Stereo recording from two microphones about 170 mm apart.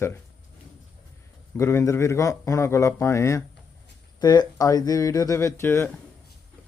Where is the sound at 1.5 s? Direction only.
15° left (ahead or behind).